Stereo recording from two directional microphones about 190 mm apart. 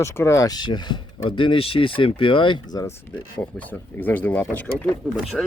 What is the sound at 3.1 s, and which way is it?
Speech, 10° left (ahead or behind).